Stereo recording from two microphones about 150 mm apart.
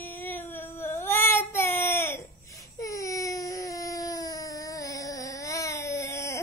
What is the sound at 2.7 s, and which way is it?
Baby cry, 20° left (ahead or behind).